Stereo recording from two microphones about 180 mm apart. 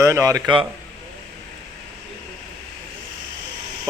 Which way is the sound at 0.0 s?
15° right (ahead or behind).